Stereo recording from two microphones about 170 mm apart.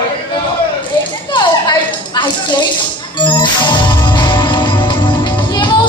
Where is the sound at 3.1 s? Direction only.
30° left (ahead or behind).